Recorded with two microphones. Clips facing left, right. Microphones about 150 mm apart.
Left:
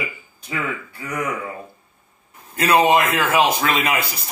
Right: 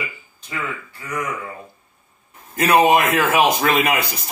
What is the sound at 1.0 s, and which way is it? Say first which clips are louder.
Speech: left 1 dB; 30° left (ahead or behind).